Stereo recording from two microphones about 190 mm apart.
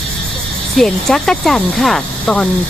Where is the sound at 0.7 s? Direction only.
Centre (ahead or behind).